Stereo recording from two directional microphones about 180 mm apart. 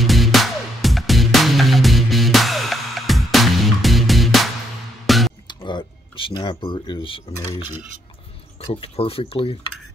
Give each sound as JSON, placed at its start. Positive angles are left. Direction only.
{"t": 0.0, "sound": "music", "side_deg": 0}
{"t": 5.5, "sound": "a sound", "side_deg": 25}
{"t": 8.6, "sound": "speech", "side_deg": 30}